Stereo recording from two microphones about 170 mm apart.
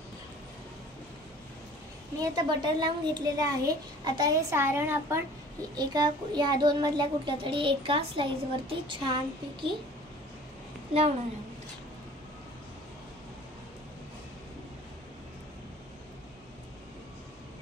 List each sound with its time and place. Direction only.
2.1 s a child's voice: 25° right (ahead or behind)
5.8 s a child's voice: 25° right (ahead or behind)
10.9 s a woman's voice: 35° right (ahead or behind)